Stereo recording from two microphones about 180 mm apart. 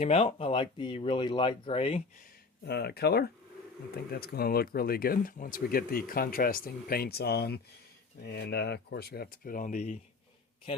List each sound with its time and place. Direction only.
0.0 s speech: 30° left (ahead or behind)
2.6 s speech: 60° left (ahead or behind); by 10.0 s 40° left (ahead or behind)